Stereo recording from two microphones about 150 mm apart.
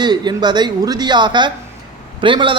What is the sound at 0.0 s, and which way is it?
A man's voice, 30° right (ahead or behind).